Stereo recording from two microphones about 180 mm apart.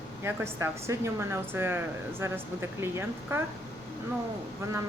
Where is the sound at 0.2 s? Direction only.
15° right (ahead or behind).